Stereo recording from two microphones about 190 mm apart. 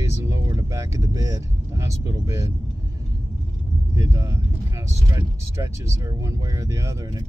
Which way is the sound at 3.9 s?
15° right (ahead or behind).